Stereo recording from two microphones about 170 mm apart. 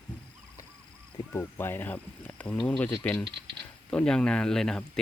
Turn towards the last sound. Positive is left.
turn(degrees=5)  # may be behind; listen again after turning